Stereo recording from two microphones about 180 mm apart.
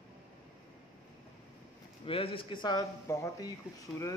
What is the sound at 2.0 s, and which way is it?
Speech, 30° left (ahead or behind).